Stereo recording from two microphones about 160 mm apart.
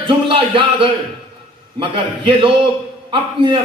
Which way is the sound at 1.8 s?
35° right (ahead or behind).